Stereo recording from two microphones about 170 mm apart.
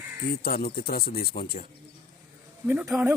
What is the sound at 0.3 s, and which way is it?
Speech, 65° left (ahead or behind).